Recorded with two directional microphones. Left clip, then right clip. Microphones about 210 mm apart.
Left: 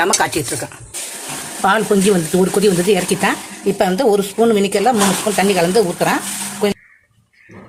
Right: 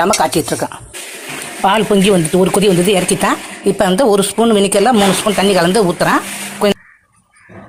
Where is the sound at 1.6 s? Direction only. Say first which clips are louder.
Right 2 dB; 10° right (ahead or behind).